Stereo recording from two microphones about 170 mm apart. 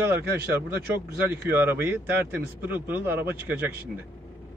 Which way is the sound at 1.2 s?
10° right (ahead or behind).